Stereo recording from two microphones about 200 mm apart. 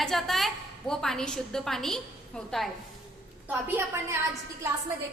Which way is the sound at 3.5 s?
10° right (ahead or behind).